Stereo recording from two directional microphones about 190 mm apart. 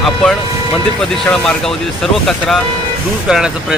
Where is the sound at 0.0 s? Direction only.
Centre (ahead or behind).